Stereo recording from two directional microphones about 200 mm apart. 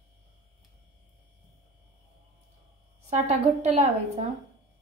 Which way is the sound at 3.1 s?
35° right (ahead or behind).